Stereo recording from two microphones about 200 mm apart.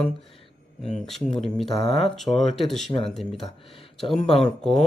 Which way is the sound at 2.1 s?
Centre (ahead or behind).